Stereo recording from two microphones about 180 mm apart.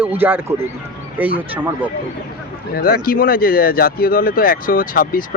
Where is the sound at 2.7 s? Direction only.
55° left (ahead or behind).